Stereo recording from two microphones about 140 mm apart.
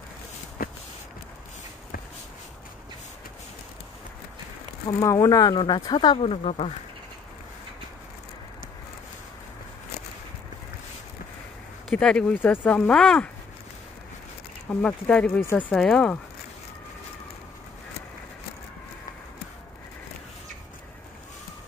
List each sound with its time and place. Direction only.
0.6 s walk: 90° left
4.8 s speech: 25° left (ahead or behind)
6.2 s speech: 45° left (ahead or behind)
11.9 s speech: 5° left (ahead or behind)
14.7 s speech: 10° left (ahead or behind)